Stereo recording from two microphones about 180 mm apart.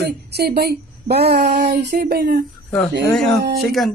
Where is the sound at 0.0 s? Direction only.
65° right (ahead or behind).